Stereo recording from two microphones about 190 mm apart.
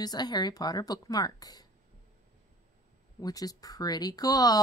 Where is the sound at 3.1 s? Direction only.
20° left (ahead or behind).